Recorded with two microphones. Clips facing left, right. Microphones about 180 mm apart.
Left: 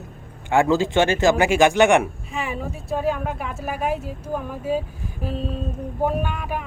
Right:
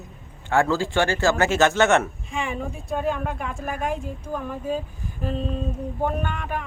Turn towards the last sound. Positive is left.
turn(degrees=5)  # may be behind; listen again after turning